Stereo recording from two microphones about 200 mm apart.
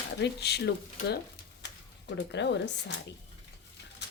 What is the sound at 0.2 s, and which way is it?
Speech, 55° left (ahead or behind).